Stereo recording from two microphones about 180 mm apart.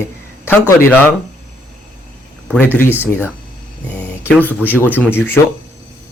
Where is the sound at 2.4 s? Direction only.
10° left (ahead or behind).